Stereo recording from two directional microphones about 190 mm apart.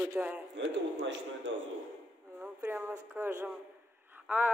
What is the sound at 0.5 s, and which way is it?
Speech, 70° right (ahead or behind).